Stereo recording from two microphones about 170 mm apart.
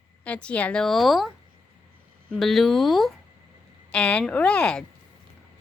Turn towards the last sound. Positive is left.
turn(degrees=5)  # may be behind; listen again after turning